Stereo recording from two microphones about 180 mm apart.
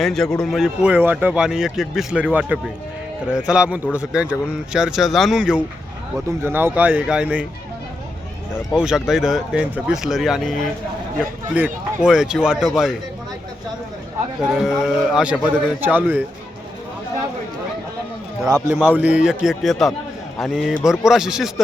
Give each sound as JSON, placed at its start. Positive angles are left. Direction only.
{"t": 0.0, "sound": "speech", "side_deg": 0}
{"t": 8.7, "sound": "speech", "side_deg": -5}
{"t": 14.5, "sound": "speech", "side_deg": 0}
{"t": 18.4, "sound": "speech", "side_deg": -15}